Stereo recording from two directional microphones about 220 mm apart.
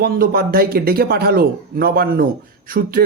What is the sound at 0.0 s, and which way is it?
Speech, 45° right (ahead or behind).